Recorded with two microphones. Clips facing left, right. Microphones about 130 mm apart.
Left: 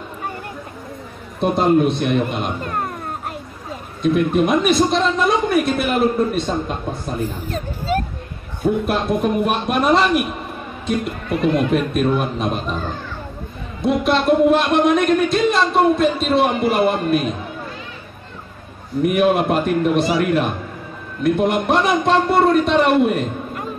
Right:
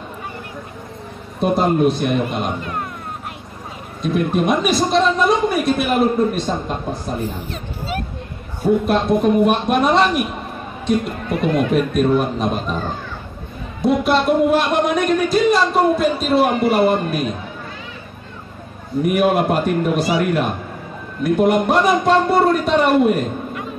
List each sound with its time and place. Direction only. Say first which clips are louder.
1.4 s a man's voice: even; centre (ahead or behind)
2.6 s speech: left 2 dB; 40° left (ahead or behind)
4.0 s a man's voice: left 2 dB; centre (ahead or behind)
7.3 s speech: left 2 dB; 40° left (ahead or behind)
8.6 s a man's voice: right 3 dB; centre (ahead or behind)
13.7 s a man's voice: right 1 dB; centre (ahead or behind)
19.0 s a man's voice: even; centre (ahead or behind)
21.2 s a man's voice: right 2 dB; centre (ahead or behind)